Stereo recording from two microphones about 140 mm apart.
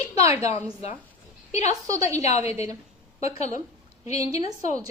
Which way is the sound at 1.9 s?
25° right (ahead or behind).